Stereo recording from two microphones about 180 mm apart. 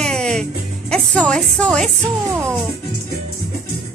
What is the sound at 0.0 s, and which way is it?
Music, 5° left (ahead or behind).